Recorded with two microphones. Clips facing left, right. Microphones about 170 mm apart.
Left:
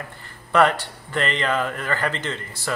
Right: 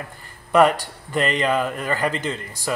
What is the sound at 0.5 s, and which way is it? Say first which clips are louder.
Speech: right 2 dB; 10° right (ahead or behind).